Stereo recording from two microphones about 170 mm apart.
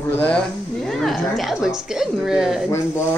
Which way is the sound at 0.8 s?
Centre (ahead or behind).